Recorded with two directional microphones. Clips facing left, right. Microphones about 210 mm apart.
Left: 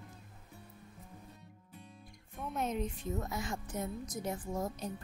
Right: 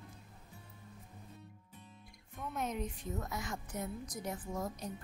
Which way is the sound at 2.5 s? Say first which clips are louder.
Left 3 dB; 25° left (ahead or behind).